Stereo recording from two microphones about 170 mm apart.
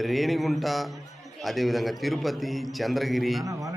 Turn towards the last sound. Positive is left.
turn(degrees=0)  # may be behind; listen again after turning